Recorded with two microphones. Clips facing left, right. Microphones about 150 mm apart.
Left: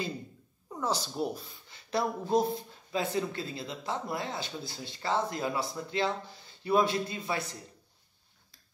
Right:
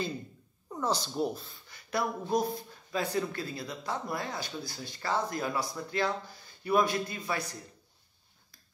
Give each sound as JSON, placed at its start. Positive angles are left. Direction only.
{"t": 0.7, "sound": "speech", "side_deg": 5}
{"t": 1.7, "sound": "speech", "side_deg": 25}